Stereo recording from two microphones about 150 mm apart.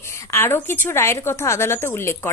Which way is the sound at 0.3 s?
15° left (ahead or behind).